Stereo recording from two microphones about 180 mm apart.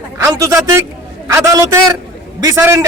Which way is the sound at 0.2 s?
15° right (ahead or behind).